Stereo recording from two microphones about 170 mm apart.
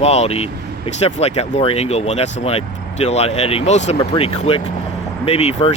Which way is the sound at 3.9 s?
25° left (ahead or behind).